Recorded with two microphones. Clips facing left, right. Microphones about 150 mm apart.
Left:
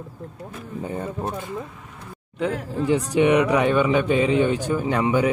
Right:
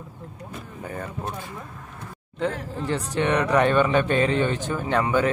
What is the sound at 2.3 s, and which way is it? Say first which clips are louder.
A man's voice: left 2 dB; 5° left (ahead or behind).